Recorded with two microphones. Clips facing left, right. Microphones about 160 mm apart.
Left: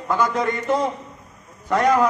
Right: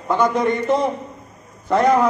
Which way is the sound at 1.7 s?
25° right (ahead or behind).